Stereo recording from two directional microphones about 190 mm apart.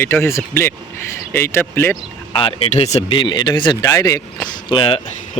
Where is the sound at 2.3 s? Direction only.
30° left (ahead or behind).